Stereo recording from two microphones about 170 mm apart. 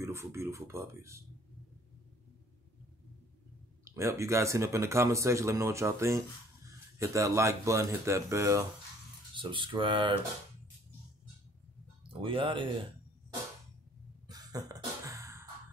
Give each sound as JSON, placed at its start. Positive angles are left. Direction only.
{"t": 0.0, "sound": "speech", "side_deg": -15}
{"t": 3.8, "sound": "speech", "side_deg": -15}
{"t": 9.3, "sound": "speech", "side_deg": -30}
{"t": 12.1, "sound": "speech", "side_deg": -30}
{"t": 14.2, "sound": "cough", "side_deg": -20}